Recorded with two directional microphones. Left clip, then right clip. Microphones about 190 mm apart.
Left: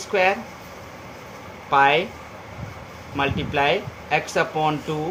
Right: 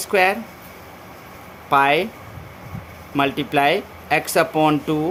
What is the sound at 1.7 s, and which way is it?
Speech, 70° right (ahead or behind).